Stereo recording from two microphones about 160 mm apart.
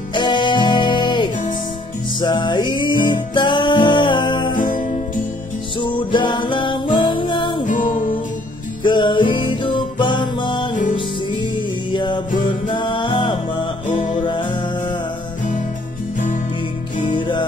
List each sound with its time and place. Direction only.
0.1 s music: 30° left (ahead or behind)
5.8 s music: 30° left (ahead or behind)
7.6 s music: 55° left (ahead or behind)
8.8 s music: 30° left (ahead or behind)
11.9 s music: 30° left (ahead or behind)
13.8 s music: 50° left (ahead or behind)
14.2 s music: 30° left (ahead or behind)
17.1 s music: 30° left (ahead or behind)